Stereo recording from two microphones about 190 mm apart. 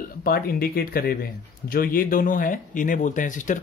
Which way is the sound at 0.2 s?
55° left (ahead or behind).